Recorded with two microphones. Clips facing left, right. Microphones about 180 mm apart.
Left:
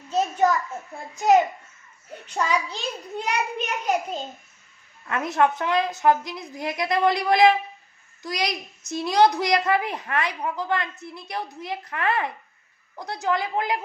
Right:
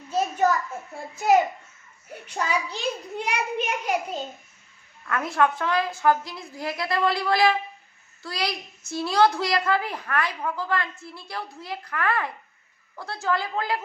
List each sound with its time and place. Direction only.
2.1 s a child's voice: 10° right (ahead or behind)
5.0 s a child's voice: 20° left (ahead or behind)